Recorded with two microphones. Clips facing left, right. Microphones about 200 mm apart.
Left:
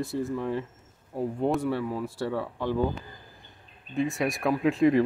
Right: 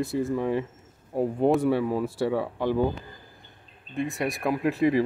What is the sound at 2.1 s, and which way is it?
Speech, 10° right (ahead or behind).